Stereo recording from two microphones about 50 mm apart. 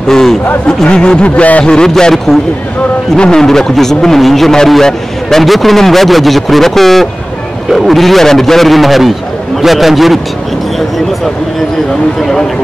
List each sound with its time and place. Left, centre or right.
0.1 s speech: centre
1.2 s a man's voice: left
1.7 s a man's voice: centre
12.2 s speech: centre